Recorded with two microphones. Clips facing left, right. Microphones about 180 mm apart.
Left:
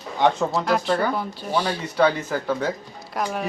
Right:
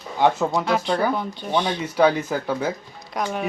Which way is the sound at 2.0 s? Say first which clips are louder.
Right 2 dB; 10° right (ahead or behind).